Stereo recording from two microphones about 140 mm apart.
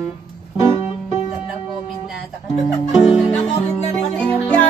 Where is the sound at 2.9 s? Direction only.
5° right (ahead or behind).